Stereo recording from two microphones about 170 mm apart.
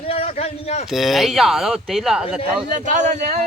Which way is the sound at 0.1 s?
35° left (ahead or behind).